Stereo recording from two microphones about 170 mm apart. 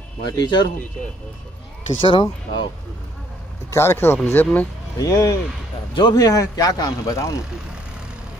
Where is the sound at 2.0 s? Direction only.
30° left (ahead or behind).